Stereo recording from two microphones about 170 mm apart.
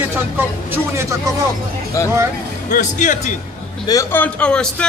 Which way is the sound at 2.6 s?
50° left (ahead or behind).